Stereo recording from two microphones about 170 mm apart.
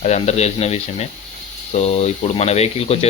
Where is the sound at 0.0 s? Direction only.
40° left (ahead or behind).